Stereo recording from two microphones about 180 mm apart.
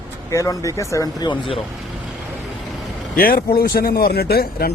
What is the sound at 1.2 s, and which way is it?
Speech, 30° left (ahead or behind).